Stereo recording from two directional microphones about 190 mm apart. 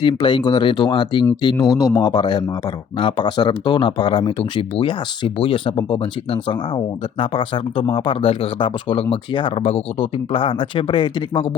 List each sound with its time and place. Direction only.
0.0 s speech: 25° left (ahead or behind)